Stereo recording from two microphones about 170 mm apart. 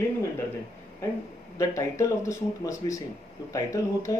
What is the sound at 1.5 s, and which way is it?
Speech, 20° left (ahead or behind).